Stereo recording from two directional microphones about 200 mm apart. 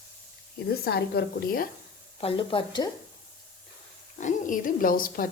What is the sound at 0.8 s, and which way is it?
Speech, 50° left (ahead or behind).